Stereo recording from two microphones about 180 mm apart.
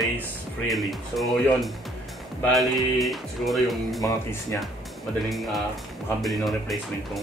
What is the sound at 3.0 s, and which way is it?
Speech, centre (ahead or behind).